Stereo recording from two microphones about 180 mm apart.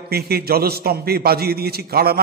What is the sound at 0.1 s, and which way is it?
A man's voice, 60° right (ahead or behind).